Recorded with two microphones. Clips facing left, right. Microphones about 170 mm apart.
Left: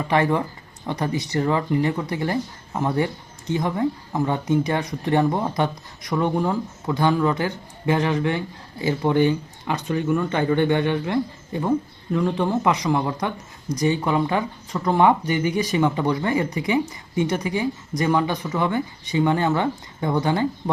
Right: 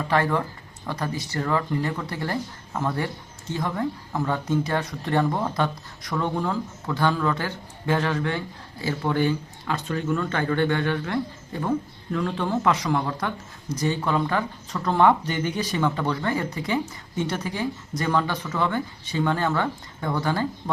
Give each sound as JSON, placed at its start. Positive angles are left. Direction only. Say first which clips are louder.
{"t": 0.0, "sound": "speech", "louder": "left 3 dB", "side_deg": 15}